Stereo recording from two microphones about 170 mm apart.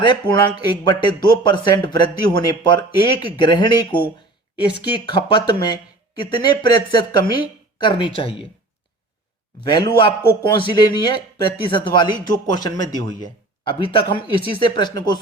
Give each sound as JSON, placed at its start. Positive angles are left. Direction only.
{"t": 0.0, "sound": "speech", "side_deg": 25}
{"t": 9.6, "sound": "speech", "side_deg": 25}